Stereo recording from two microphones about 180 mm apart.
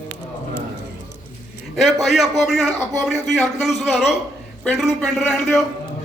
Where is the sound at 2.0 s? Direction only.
Centre (ahead or behind).